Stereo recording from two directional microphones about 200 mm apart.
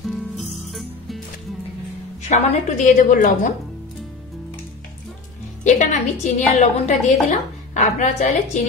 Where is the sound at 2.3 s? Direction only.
35° left (ahead or behind).